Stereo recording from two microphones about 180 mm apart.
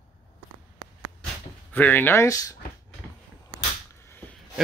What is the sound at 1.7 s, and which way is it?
Speech, 10° left (ahead or behind).